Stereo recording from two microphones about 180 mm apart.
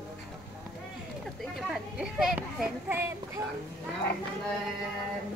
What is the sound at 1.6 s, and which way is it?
Children playing, 5° right (ahead or behind).